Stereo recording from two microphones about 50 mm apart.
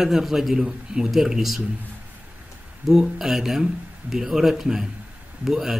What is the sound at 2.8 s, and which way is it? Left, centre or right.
Speech, centre.